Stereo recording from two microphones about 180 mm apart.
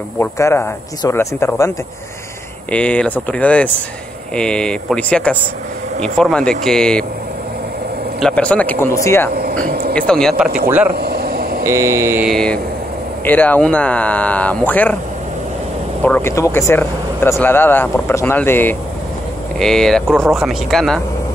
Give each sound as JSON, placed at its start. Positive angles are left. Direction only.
{"t": 0.2, "sound": "speech", "side_deg": 15}
{"t": 2.7, "sound": "speech", "side_deg": 5}
{"t": 8.2, "sound": "speech", "side_deg": 5}
{"t": 9.3, "sound": "speech", "side_deg": -55}
{"t": 9.9, "sound": "speech", "side_deg": 5}
{"t": 11.0, "sound": "a sound", "side_deg": -60}
{"t": 11.6, "sound": "speech", "side_deg": -15}
{"t": 12.3, "sound": "speech", "side_deg": 5}
{"t": 16.0, "sound": "speech", "side_deg": 10}